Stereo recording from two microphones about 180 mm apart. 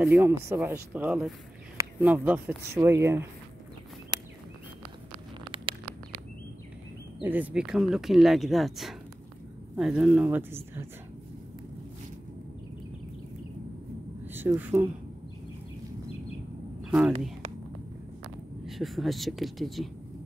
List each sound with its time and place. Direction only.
0.0 s speech: 10° right (ahead or behind)
4.1 s a sound: 25° right (ahead or behind)
7.2 s speech: 10° right (ahead or behind)
14.2 s speech: 10° right (ahead or behind)
16.8 s a sound: centre (ahead or behind)
18.7 s speech: centre (ahead or behind)